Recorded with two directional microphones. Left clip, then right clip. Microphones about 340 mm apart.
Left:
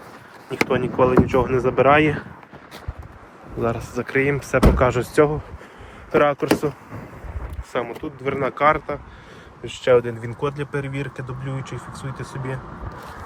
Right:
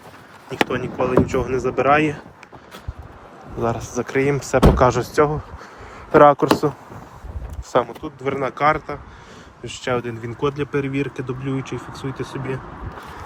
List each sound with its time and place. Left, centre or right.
0.5 s speech: centre
3.6 s speech: centre
7.7 s speech: centre